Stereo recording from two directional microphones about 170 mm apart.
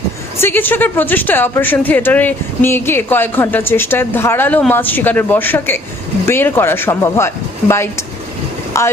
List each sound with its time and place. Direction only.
0.3 s speech: 15° left (ahead or behind)